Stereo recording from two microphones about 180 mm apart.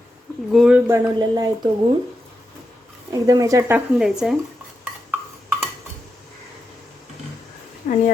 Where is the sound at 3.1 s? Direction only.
20° right (ahead or behind); by 4.3 s 5° right (ahead or behind).